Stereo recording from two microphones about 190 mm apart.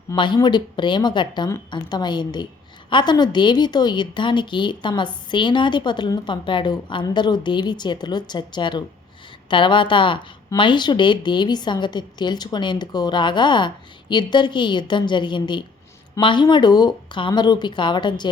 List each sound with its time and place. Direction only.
0.1 s speech: 20° left (ahead or behind)